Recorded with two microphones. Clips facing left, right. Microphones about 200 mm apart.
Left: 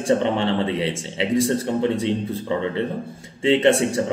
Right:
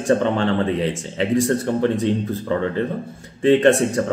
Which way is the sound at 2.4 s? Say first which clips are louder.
Right 2 dB; 15° left (ahead or behind).